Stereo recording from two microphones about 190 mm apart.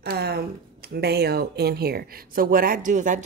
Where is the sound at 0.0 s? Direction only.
55° right (ahead or behind).